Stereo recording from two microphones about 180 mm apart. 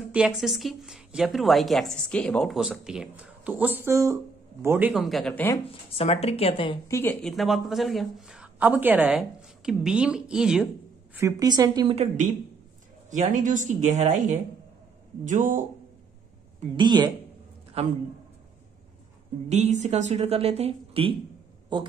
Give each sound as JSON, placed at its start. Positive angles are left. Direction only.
{"t": 0.1, "sound": "a woman's voice", "side_deg": -5}
{"t": 5.9, "sound": "speech", "side_deg": 35}
{"t": 6.9, "sound": "a woman's voice", "side_deg": 10}
{"t": 11.1, "sound": "a woman's voice", "side_deg": -20}
{"t": 11.9, "sound": "a woman's voice", "side_deg": -35}
{"t": 16.7, "sound": "a woman's voice", "side_deg": -25}
{"t": 19.5, "sound": "speech", "side_deg": -40}